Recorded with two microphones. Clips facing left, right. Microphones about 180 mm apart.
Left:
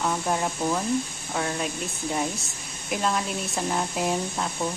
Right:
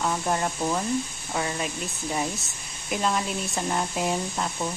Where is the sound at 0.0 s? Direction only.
Centre (ahead or behind).